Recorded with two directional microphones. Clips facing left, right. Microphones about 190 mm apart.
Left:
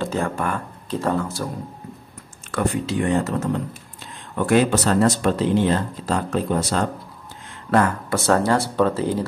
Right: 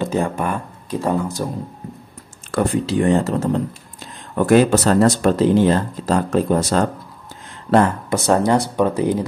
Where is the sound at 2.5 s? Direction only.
35° right (ahead or behind).